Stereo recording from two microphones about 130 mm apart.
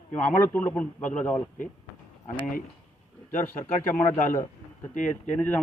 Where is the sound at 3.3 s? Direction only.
15° left (ahead or behind).